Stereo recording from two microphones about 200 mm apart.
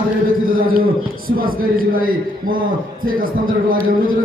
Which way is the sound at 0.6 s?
45° right (ahead or behind).